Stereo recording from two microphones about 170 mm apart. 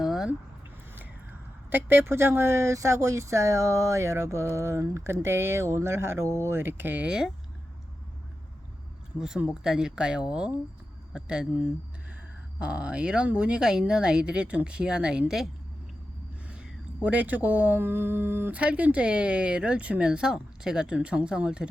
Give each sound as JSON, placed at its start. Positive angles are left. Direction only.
{"t": 0.0, "sound": "a sound", "side_deg": 0}
{"t": 1.7, "sound": "speech", "side_deg": -10}
{"t": 9.1, "sound": "speech", "side_deg": -5}
{"t": 12.5, "sound": "speech", "side_deg": -5}
{"t": 16.5, "sound": "speech", "side_deg": -5}